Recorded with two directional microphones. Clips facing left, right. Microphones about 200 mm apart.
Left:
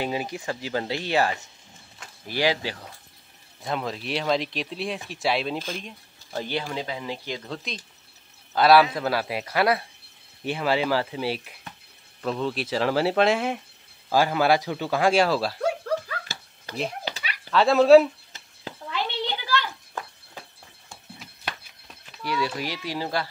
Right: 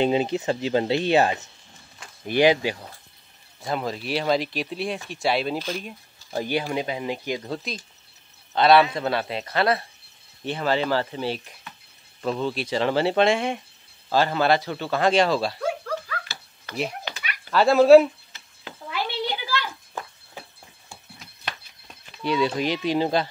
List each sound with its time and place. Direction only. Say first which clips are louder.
0.0 s speech: right 7 dB; 25° right (ahead or behind)
3.6 s speech: right 2 dB; centre (ahead or behind)
17.0 s a sound: left 1 dB; 30° left (ahead or behind)
17.5 s speech: right 2 dB; centre (ahead or behind)
18.9 s a sound: right 1 dB; 10° right (ahead or behind)
22.2 s speech: right 5 dB; 20° right (ahead or behind)